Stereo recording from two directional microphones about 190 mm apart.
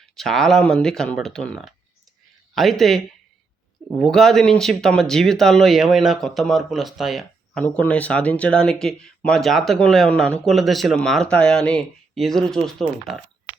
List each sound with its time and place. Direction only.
0.0 s speech: centre (ahead or behind)